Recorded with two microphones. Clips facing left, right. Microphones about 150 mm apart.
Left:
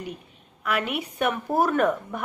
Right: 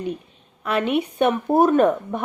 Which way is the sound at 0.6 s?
25° right (ahead or behind).